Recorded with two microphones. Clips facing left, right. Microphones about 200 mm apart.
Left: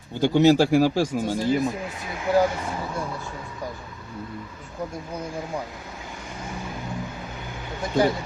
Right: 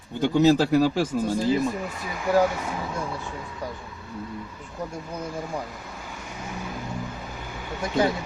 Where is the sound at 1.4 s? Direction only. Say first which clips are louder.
Left 1 dB; centre (ahead or behind).